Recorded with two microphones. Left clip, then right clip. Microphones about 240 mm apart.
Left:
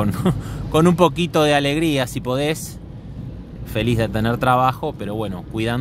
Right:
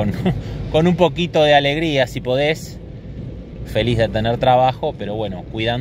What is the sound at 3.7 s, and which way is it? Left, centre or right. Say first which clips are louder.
Speech: right 4 dB; centre.